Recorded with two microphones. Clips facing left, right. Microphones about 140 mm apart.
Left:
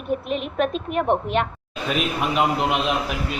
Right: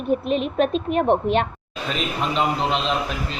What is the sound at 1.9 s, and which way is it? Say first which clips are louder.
A man's voice: left 2 dB; 10° left (ahead or behind).